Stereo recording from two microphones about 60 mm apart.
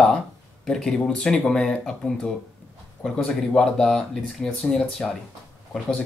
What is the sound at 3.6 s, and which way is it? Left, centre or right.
Speech, centre.